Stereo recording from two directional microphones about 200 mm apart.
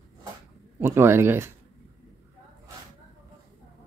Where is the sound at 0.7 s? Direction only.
10° right (ahead or behind).